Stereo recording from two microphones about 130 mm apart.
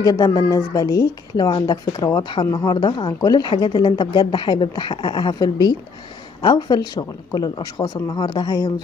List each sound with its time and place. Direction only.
0.0 s a woman's voice: 30° left (ahead or behind)